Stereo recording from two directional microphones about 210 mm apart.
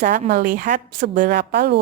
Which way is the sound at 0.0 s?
45° right (ahead or behind).